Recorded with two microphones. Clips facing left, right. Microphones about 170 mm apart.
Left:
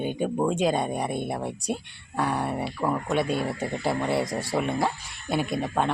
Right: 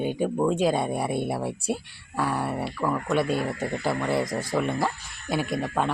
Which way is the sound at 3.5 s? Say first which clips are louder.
Even; 25° left (ahead or behind).